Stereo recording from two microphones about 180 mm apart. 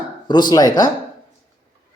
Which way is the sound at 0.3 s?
25° left (ahead or behind).